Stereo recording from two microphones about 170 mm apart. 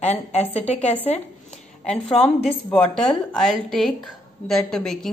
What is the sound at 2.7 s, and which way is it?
A woman's voice, 5° left (ahead or behind).